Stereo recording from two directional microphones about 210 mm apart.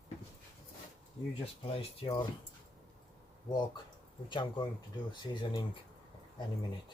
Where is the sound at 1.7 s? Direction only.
25° left (ahead or behind).